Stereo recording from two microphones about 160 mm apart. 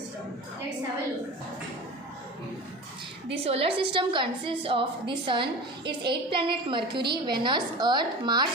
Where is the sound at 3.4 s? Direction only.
35° right (ahead or behind).